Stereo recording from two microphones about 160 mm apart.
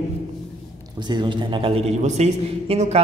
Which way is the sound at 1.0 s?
30° right (ahead or behind).